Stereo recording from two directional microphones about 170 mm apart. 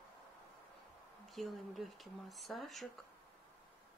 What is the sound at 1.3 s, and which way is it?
Speech, centre (ahead or behind).